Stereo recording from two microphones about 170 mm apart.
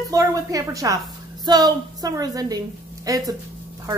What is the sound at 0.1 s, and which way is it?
A child's voice, 20° right (ahead or behind).